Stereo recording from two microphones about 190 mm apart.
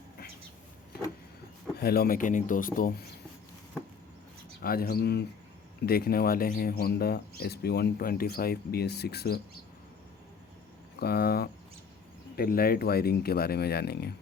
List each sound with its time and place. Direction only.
1.8 s speech: 55° left (ahead or behind)
4.6 s speech: 50° left (ahead or behind)
11.0 s speech: 55° left (ahead or behind)